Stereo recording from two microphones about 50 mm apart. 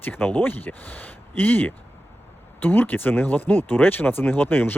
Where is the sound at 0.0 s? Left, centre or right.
Left.